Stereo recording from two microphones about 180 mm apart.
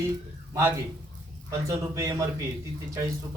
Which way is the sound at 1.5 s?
15° right (ahead or behind).